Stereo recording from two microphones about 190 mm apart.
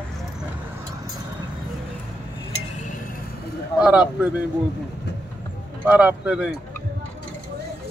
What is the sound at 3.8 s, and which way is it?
Speech, 5° right (ahead or behind).